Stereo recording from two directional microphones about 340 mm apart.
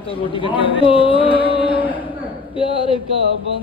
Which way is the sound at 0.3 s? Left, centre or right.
Centre.